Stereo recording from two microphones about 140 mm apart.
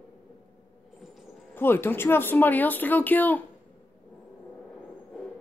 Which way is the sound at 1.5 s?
15° left (ahead or behind).